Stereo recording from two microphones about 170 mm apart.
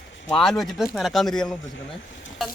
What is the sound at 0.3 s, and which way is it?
Speech, 5° left (ahead or behind).